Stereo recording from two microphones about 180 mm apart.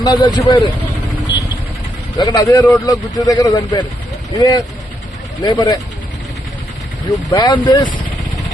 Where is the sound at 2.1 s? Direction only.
20° left (ahead or behind).